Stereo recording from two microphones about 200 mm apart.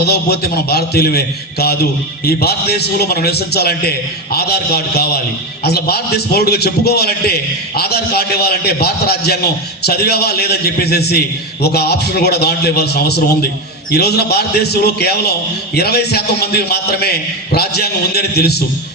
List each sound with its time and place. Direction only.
0.0 s a man's voice: 50° left (ahead or behind)